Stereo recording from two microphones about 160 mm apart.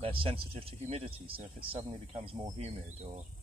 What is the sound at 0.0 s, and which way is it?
Speech, 35° right (ahead or behind).